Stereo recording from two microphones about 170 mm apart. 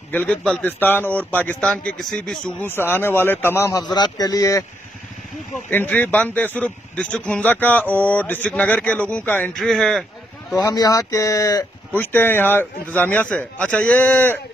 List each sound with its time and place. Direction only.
0.1 s a man's voice: 10° left (ahead or behind)
5.7 s a man's voice: 10° left (ahead or behind)
10.5 s a man's voice: 20° left (ahead or behind)